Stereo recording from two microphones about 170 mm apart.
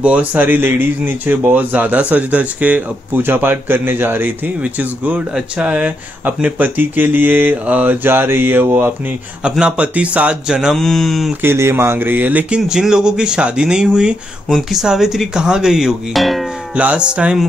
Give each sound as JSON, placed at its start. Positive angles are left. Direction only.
{"t": 0.0, "sound": "speech", "side_deg": -10}
{"t": 11.4, "sound": "speech", "side_deg": -15}